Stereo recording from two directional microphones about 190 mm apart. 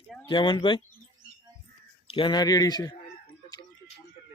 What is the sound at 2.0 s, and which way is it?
Speech, 25° left (ahead or behind).